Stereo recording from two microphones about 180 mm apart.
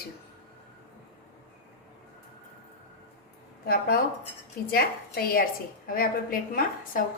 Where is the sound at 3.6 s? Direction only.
55° left (ahead or behind).